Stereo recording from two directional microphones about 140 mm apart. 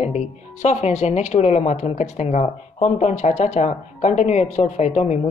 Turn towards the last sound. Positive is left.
turn(degrees=55)  # may be behind; listen again after turning